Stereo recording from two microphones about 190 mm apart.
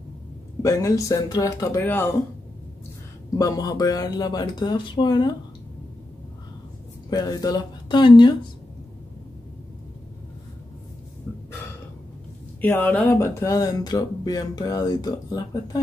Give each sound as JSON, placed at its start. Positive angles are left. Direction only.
{"t": 0.6, "sound": "speech", "side_deg": 15}
{"t": 3.3, "sound": "speech", "side_deg": 20}
{"t": 7.1, "sound": "speech", "side_deg": 20}
{"t": 12.6, "sound": "speech", "side_deg": 10}